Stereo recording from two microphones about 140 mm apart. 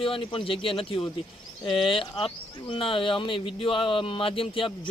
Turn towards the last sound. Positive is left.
turn(degrees=40)  # may be behind; listen again after turning